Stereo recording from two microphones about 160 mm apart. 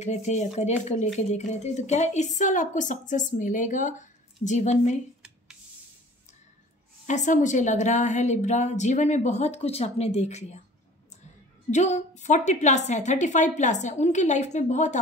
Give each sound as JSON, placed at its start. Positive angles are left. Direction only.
{"t": 0.0, "sound": "a woman's voice", "side_deg": 45}
{"t": 7.1, "sound": "a woman's voice", "side_deg": 50}
{"t": 11.7, "sound": "a woman's voice", "side_deg": 45}